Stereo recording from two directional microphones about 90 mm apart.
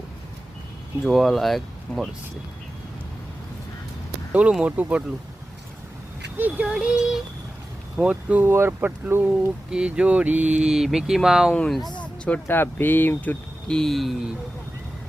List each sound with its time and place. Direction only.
1.0 s speech: centre (ahead or behind)
4.3 s speech: 15° right (ahead or behind)
6.3 s speech: 20° right (ahead or behind)
6.7 s speech: 5° right (ahead or behind); by 9.3 s 20° right (ahead or behind)
9.6 s speech: 10° right (ahead or behind)
11.5 s speech: 10° left (ahead or behind)
11.8 s speech: 55° left (ahead or behind)
12.5 s speech: 25° left (ahead or behind)
13.7 s speech: 5° left (ahead or behind)